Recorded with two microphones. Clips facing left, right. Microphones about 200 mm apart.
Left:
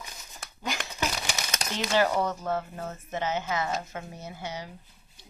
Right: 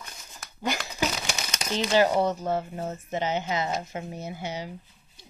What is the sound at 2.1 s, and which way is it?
Speech, 30° right (ahead or behind).